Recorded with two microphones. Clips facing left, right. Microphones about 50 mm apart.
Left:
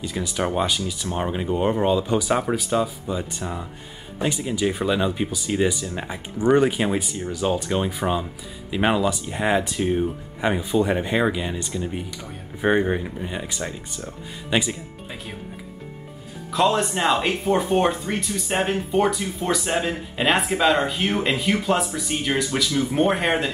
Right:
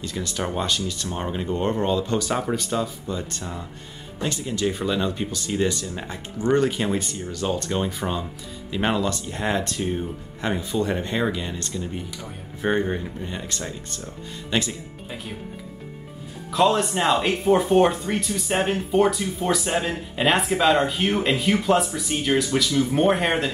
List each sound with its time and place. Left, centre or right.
0.0 s speech: centre
16.4 s speech: centre